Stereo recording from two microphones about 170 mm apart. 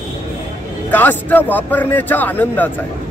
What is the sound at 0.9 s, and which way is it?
Speech, 10° left (ahead or behind).